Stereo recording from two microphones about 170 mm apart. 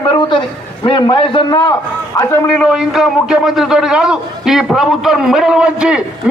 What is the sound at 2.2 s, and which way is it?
Speech, 15° left (ahead or behind).